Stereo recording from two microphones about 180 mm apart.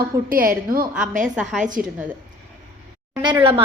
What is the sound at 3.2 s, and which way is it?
Speech, 25° right (ahead or behind).